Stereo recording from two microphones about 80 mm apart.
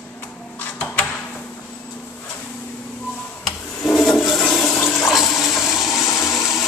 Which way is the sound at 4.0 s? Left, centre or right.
Centre.